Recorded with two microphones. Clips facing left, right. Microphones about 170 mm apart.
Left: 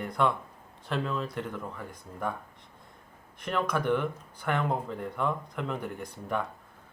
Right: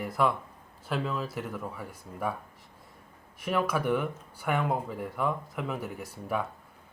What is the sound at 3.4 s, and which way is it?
Speech, 5° right (ahead or behind).